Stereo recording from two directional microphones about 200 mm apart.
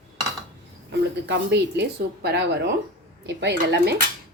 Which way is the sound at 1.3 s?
60° right (ahead or behind).